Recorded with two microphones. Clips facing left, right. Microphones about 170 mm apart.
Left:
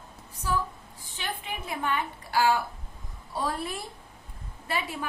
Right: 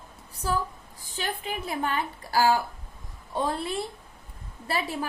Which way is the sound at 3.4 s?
25° right (ahead or behind).